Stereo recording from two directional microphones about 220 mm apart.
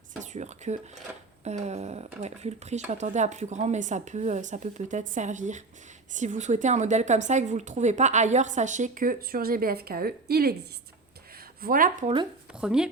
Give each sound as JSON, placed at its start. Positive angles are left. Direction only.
{"t": 0.2, "sound": "speech", "side_deg": -30}
{"t": 1.1, "sound": "dishes", "side_deg": -5}
{"t": 1.5, "sound": "a woman's voice", "side_deg": -30}
{"t": 11.6, "sound": "a woman's voice", "side_deg": -40}
{"t": 12.5, "sound": "speech", "side_deg": -5}